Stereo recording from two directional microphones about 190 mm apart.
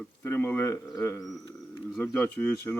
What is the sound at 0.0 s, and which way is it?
Speech, 10° left (ahead or behind).